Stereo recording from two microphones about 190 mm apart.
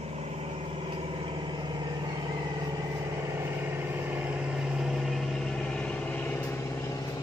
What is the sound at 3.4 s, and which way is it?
Vehicle, 10° right (ahead or behind).